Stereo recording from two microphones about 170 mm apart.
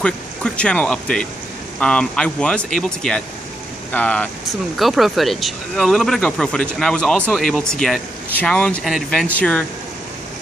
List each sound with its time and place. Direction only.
0.0 s speech: 5° left (ahead or behind)